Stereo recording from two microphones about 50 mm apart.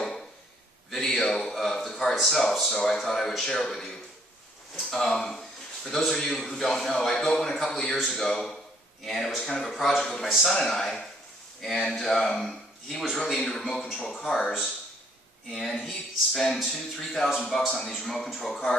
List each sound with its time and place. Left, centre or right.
0.8 s a sound: centre
2.1 s a man's voice: centre
15.5 s a man's voice: centre